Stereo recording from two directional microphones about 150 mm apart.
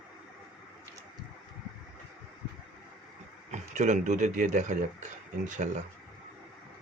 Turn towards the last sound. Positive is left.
turn(degrees=-55)  # may be behind; listen again after turning